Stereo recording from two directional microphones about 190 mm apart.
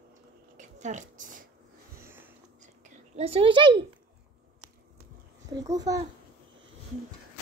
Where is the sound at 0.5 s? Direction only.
40° right (ahead or behind).